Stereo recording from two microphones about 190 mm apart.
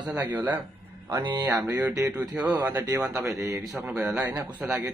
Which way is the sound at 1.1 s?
20° right (ahead or behind).